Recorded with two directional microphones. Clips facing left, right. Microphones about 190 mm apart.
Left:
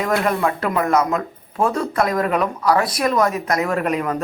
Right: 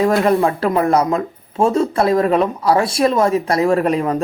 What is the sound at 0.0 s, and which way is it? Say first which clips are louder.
A man's voice: right 5 dB; 30° right (ahead or behind).